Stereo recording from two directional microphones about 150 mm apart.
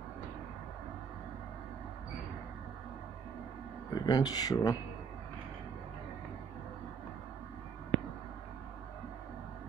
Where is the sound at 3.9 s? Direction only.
25° left (ahead or behind).